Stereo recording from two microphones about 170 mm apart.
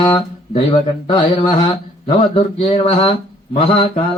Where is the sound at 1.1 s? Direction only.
30° left (ahead or behind).